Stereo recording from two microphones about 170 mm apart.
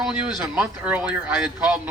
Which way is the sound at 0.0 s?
5° right (ahead or behind).